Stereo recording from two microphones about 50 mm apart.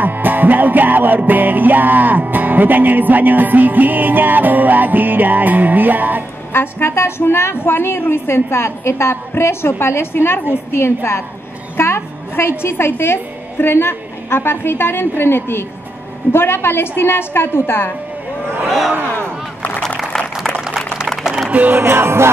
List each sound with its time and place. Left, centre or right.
0.0 s music: right
6.5 s a woman's voice: left
20.4 s a sound: centre
21.5 s music: right
21.7 s music: right